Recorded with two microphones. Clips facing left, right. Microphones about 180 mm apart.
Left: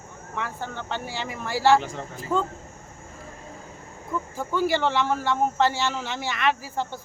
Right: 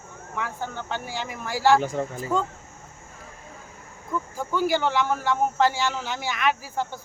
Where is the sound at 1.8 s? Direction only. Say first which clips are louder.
Right 7 dB; 45° right (ahead or behind).